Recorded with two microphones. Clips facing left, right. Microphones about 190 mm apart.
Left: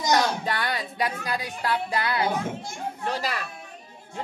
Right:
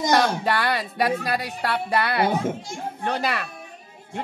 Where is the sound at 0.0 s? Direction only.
60° right (ahead or behind).